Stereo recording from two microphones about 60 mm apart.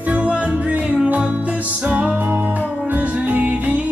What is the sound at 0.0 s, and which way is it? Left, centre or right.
Music, right.